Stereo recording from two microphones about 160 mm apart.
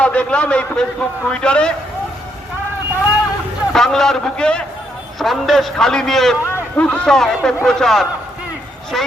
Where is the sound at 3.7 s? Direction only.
5° left (ahead or behind).